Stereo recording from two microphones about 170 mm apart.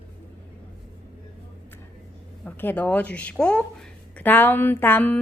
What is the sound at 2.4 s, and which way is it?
Speech, 10° left (ahead or behind).